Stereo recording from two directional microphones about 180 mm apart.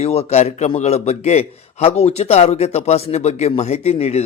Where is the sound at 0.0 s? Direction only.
35° left (ahead or behind).